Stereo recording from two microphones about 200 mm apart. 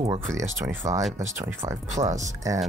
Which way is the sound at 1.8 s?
35° right (ahead or behind).